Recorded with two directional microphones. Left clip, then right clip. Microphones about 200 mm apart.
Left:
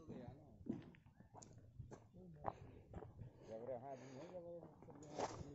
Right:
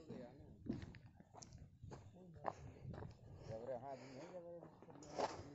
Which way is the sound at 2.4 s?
35° right (ahead or behind).